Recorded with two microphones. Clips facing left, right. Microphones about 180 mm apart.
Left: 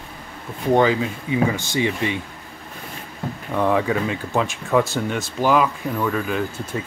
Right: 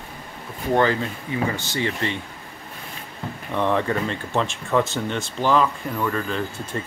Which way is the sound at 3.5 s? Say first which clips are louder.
Left 2 dB; 10° left (ahead or behind).